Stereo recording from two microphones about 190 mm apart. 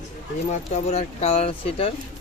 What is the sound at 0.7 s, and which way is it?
Speech, 35° left (ahead or behind).